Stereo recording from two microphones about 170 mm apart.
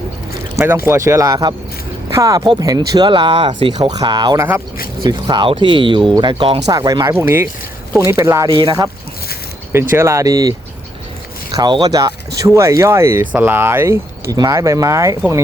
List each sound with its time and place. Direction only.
0.9 s speech: 15° right (ahead or behind)
9.9 s speech: 15° right (ahead or behind)
11.5 s speech: 25° right (ahead or behind)